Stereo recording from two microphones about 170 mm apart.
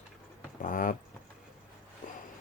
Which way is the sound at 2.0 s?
55° left (ahead or behind).